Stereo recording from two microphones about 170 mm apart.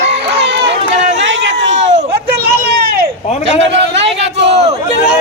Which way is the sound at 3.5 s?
90° right.